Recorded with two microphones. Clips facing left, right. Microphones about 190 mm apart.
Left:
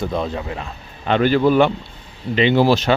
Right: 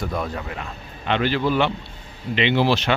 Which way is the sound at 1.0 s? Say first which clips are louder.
Left 6 dB; 45° left (ahead or behind).